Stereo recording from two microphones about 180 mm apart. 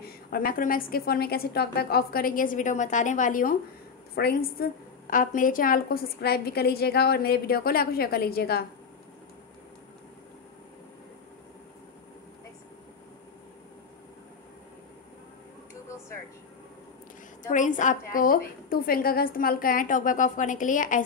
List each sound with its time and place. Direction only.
0.3 s a woman's voice: 50° left (ahead or behind)
4.1 s a woman's voice: 60° left (ahead or behind)
17.4 s a woman's voice: 45° left (ahead or behind)